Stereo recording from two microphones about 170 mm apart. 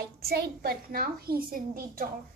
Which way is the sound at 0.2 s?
65° right (ahead or behind).